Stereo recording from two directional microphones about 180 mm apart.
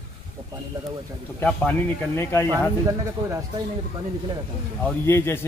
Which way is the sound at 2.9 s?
15° right (ahead or behind).